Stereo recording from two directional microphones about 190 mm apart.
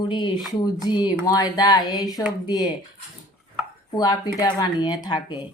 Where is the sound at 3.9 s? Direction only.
20° left (ahead or behind).